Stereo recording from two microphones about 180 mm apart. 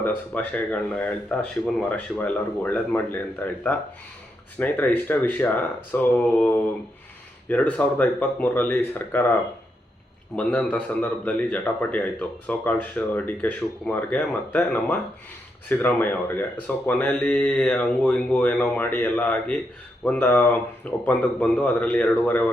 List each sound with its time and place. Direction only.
0.0 s speech: 10° left (ahead or behind)